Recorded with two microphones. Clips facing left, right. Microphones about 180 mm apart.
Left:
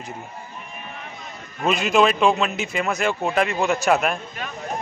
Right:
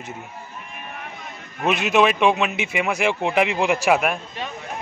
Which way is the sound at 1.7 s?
5° right (ahead or behind).